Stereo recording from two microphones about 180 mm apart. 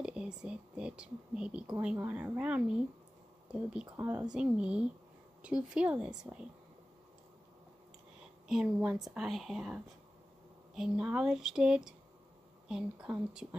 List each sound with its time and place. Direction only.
0.0 s speech: 5° right (ahead or behind)
8.5 s speech: 5° right (ahead or behind)